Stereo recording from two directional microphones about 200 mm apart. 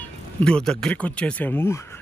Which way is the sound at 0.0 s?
5° left (ahead or behind).